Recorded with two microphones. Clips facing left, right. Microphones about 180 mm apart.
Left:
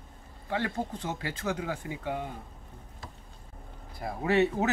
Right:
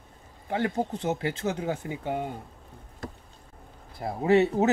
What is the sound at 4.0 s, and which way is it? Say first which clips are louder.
Speech: right 4 dB; 25° right (ahead or behind).